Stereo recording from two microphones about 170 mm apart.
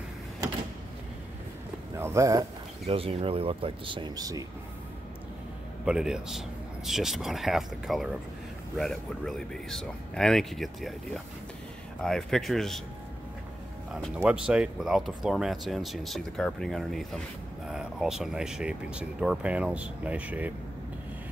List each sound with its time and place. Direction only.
2.0 s speech: 15° right (ahead or behind)
2.9 s speech: 35° right (ahead or behind)
5.9 s speech: 5° right (ahead or behind)
12.0 s speech: 5° left (ahead or behind)
14.0 s speech: 5° right (ahead or behind)